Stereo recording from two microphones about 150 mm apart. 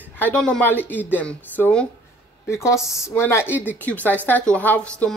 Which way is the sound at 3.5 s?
10° right (ahead or behind).